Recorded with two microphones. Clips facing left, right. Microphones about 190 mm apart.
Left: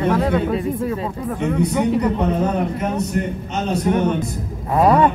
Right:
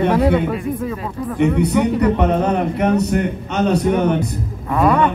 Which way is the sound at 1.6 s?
65° right (ahead or behind).